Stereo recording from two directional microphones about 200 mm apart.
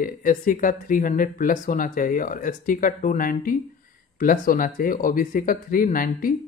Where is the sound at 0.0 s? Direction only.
45° left (ahead or behind).